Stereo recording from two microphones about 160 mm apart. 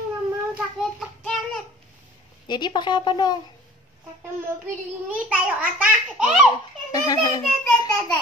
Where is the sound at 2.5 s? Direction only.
30° left (ahead or behind).